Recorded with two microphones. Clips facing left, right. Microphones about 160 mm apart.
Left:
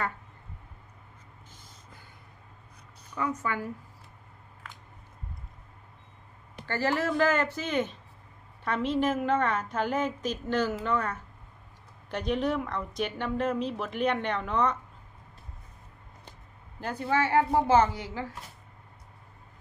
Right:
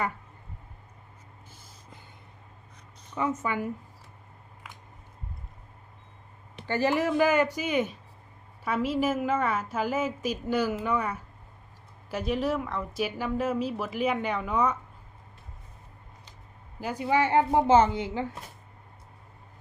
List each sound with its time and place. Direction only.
3.2 s a woman's voice: 20° right (ahead or behind)
6.7 s a woman's voice: 15° right (ahead or behind)
16.8 s a woman's voice: 10° right (ahead or behind)